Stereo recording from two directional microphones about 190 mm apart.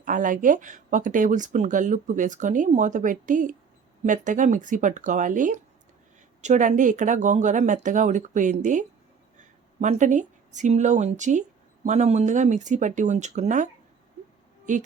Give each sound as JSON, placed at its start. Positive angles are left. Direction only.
{"t": 0.0, "sound": "speech", "side_deg": -45}
{"t": 9.8, "sound": "speech", "side_deg": -40}